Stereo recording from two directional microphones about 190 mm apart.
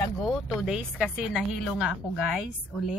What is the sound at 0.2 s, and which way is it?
Speech, centre (ahead or behind).